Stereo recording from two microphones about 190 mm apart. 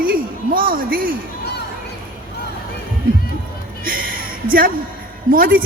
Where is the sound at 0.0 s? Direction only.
50° right (ahead or behind).